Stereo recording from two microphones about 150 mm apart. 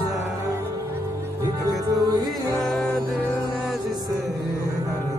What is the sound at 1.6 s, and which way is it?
Music, 25° right (ahead or behind).